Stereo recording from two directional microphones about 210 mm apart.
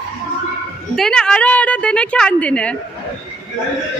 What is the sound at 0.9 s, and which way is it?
A woman's voice, 5° left (ahead or behind).